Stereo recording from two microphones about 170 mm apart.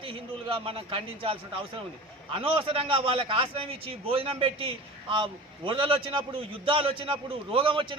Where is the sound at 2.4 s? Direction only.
35° right (ahead or behind).